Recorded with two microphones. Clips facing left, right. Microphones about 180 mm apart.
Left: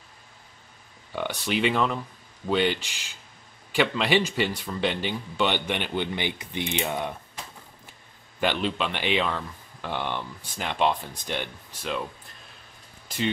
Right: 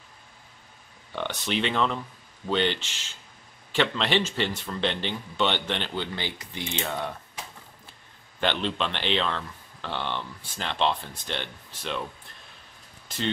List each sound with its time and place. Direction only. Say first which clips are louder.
1.1 s speech: left 1 dB; 10° left (ahead or behind)
8.4 s speech: left 1 dB; 10° left (ahead or behind)